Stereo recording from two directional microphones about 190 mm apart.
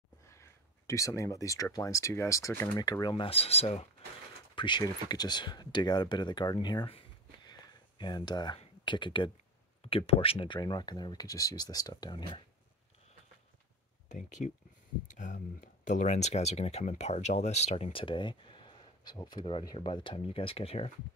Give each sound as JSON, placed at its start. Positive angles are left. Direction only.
{"t": 0.3, "sound": "speech", "side_deg": 15}
{"t": 2.8, "sound": "speech", "side_deg": 20}
{"t": 8.0, "sound": "speech", "side_deg": 25}
{"t": 14.4, "sound": "speech", "side_deg": 45}